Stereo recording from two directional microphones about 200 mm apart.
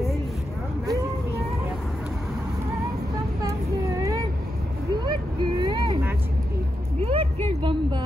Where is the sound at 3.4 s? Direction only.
15° right (ahead or behind).